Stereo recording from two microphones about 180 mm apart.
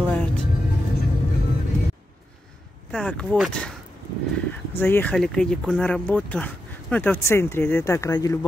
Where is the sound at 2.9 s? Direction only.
5° left (ahead or behind).